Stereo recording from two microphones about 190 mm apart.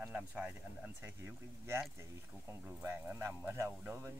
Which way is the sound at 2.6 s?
10° right (ahead or behind).